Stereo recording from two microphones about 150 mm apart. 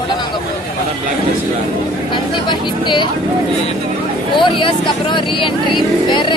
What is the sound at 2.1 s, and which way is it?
Speech, 30° left (ahead or behind).